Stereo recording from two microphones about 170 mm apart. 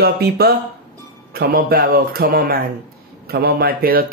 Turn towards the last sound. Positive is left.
turn(degrees=-60)  # may be behind; listen again after turning